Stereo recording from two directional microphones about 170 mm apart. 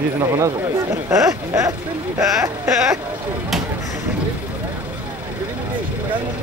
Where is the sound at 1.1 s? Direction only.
20° right (ahead or behind).